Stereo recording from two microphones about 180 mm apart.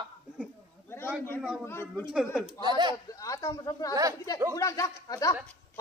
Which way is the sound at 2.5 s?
25° right (ahead or behind).